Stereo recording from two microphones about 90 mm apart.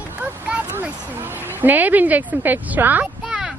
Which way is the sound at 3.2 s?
10° right (ahead or behind).